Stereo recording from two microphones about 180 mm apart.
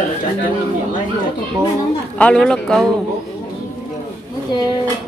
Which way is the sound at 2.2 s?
5° left (ahead or behind).